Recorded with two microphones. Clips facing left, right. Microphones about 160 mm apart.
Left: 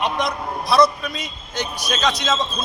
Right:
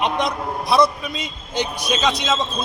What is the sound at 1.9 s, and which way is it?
Speech, 10° right (ahead or behind).